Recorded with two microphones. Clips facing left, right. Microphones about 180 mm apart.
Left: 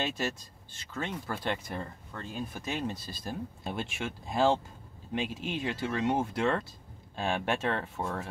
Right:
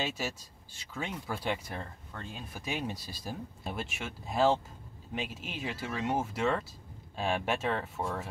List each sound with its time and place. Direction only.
0.0 s speech: 5° right (ahead or behind)